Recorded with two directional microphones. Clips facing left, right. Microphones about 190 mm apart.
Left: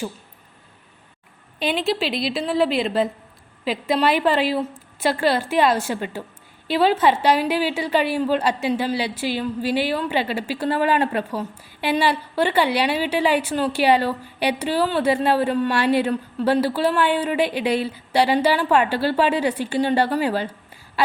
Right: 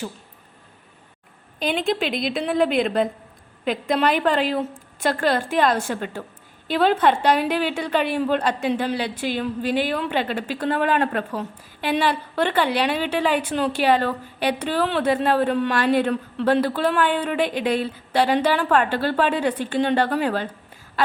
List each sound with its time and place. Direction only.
2.0 s a woman's voice: 45° right (ahead or behind)
2.6 s a woman's voice: centre (ahead or behind)